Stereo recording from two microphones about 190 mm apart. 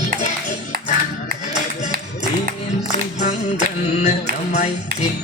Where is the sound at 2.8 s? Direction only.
40° left (ahead or behind).